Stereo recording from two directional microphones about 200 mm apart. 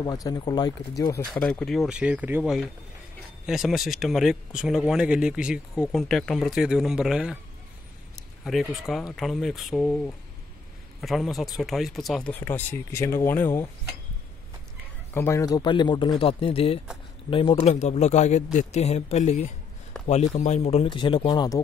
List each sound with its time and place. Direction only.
0.0 s speech: 20° left (ahead or behind)
1.3 s speech: 5° left (ahead or behind)
8.5 s speech: centre (ahead or behind)
15.1 s speech: 15° left (ahead or behind)